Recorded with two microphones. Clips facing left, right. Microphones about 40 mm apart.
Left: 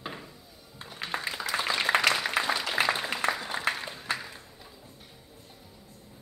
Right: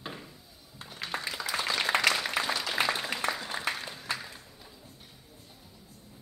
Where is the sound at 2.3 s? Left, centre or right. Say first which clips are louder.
Left 2 dB; centre.